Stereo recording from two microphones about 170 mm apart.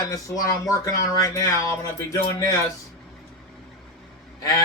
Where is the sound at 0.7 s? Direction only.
20° left (ahead or behind).